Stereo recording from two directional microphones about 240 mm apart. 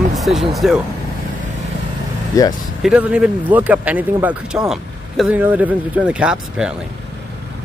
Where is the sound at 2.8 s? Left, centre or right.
Centre.